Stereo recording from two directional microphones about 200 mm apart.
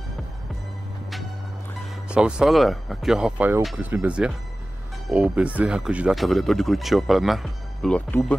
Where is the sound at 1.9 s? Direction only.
5° right (ahead or behind).